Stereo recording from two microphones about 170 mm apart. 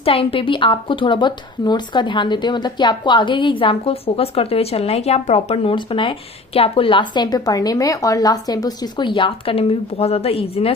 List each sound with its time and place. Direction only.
0.0 s a woman's voice: 35° left (ahead or behind)